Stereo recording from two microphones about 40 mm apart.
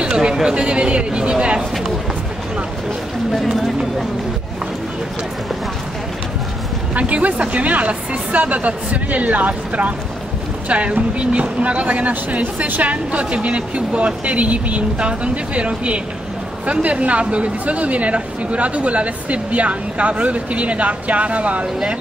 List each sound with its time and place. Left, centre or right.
0.0 s speech: centre
3.3 s speech: centre
7.0 s speech: right